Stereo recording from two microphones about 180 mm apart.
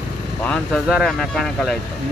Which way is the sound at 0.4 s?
Centre (ahead or behind).